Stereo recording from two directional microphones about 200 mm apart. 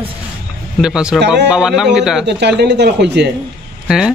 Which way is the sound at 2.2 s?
60° right (ahead or behind).